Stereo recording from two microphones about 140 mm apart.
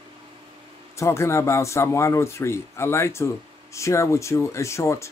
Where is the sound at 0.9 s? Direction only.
20° left (ahead or behind).